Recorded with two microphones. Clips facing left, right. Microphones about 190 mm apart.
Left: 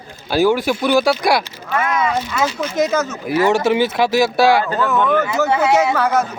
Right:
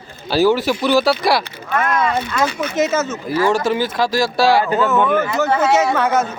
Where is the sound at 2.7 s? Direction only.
5° right (ahead or behind).